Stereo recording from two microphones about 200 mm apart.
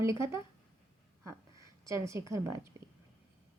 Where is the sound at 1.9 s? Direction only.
15° right (ahead or behind).